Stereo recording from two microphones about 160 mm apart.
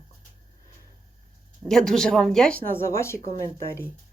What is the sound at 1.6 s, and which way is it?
Speech, 5° left (ahead or behind).